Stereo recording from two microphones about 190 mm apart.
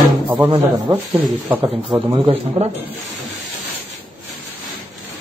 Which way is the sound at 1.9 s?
25° right (ahead or behind).